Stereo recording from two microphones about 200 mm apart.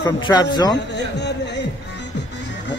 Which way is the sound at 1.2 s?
60° left (ahead or behind).